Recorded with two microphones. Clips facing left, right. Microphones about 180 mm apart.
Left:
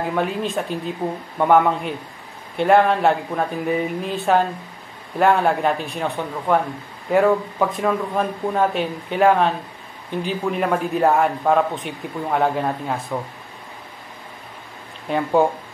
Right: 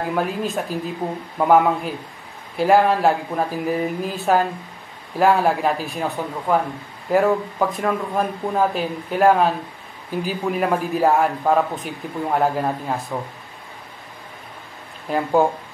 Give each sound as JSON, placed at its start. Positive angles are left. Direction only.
{"t": 0.1, "sound": "a man's voice", "side_deg": -5}
{"t": 15.0, "sound": "a man's voice", "side_deg": 0}